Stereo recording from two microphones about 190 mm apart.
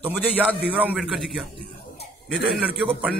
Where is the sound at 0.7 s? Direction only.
5° right (ahead or behind).